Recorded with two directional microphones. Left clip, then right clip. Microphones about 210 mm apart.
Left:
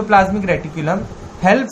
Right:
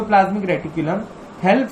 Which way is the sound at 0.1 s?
50° left (ahead or behind).